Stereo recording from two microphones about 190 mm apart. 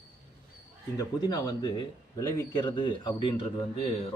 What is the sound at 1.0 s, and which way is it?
A man's voice, 20° left (ahead or behind).